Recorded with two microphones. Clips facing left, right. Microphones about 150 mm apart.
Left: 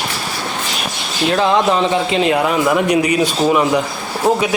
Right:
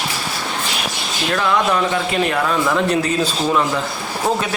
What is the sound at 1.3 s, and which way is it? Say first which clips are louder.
A man's voice: left 3 dB; 30° left (ahead or behind).